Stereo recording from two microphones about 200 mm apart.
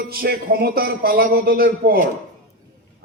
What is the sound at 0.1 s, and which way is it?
A man's voice, 50° right (ahead or behind).